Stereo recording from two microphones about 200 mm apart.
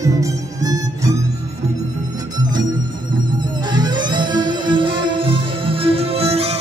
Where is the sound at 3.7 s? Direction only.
20° right (ahead or behind).